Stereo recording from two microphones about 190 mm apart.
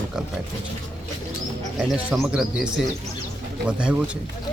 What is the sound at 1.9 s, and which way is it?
Speech, centre (ahead or behind).